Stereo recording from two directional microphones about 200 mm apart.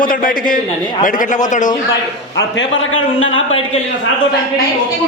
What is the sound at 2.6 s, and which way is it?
Speech, 75° left (ahead or behind).